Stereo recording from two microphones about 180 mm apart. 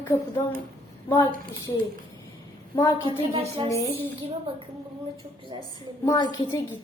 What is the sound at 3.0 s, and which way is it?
Speech, 30° right (ahead or behind).